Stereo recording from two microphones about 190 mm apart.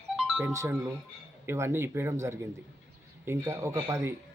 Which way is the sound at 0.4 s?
15° right (ahead or behind).